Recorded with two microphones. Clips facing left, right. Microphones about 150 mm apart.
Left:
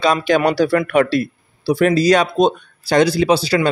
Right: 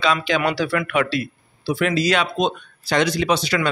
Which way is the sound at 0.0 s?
40° left (ahead or behind).